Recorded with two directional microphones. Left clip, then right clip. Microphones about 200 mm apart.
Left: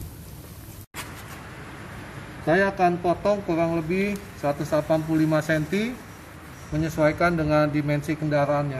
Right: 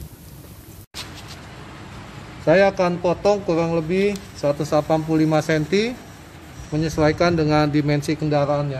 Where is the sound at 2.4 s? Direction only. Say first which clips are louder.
Right 5 dB; 50° right (ahead or behind).